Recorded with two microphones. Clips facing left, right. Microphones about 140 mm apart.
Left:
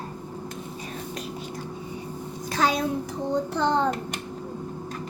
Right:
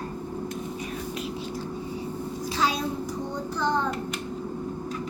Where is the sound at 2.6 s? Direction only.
55° left (ahead or behind).